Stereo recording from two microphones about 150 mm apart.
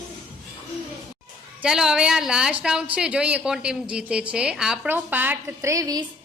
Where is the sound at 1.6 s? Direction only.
5° right (ahead or behind); by 6.0 s 25° right (ahead or behind).